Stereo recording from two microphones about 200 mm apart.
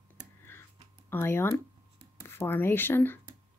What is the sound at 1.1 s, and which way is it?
Speech, 10° left (ahead or behind).